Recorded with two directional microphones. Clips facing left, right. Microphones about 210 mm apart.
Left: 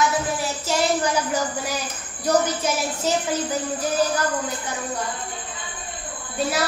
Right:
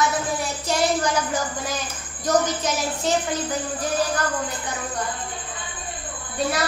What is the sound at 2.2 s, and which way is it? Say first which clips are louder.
Speech: left 1 dB; 10° left (ahead or behind).